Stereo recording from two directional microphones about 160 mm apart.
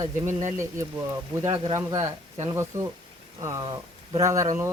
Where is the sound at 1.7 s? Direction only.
20° right (ahead or behind).